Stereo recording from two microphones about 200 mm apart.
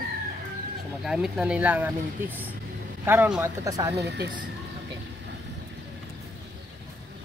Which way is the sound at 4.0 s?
55° right (ahead or behind).